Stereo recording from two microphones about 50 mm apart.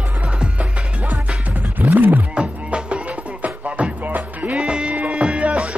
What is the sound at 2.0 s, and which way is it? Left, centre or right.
Roaring cats, right.